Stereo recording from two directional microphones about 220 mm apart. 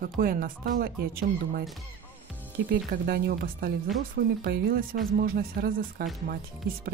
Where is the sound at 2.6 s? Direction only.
45° right (ahead or behind).